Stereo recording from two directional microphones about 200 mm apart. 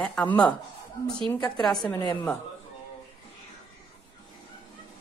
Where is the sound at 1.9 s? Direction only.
20° left (ahead or behind).